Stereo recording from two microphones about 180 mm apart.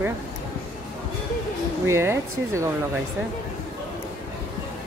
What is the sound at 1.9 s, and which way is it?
Speech, 15° right (ahead or behind).